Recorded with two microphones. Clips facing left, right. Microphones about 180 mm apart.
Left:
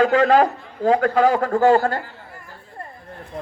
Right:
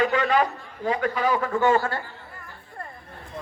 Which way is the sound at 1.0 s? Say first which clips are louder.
Left 7 dB; 75° left (ahead or behind).